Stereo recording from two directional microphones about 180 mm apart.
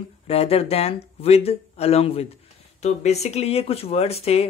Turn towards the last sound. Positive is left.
turn(degrees=35)  # may be behind; listen again after turning